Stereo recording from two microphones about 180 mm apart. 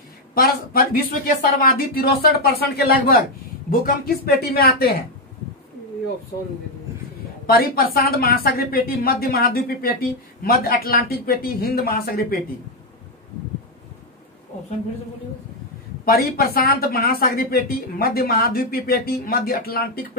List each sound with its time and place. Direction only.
0.3 s a woman's voice: 55° left (ahead or behind)
7.4 s a woman's voice: 55° left (ahead or behind)
16.1 s a woman's voice: 55° left (ahead or behind)